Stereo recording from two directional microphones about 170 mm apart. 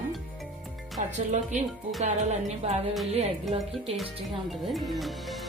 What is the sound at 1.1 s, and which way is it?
A woman's voice, 45° right (ahead or behind).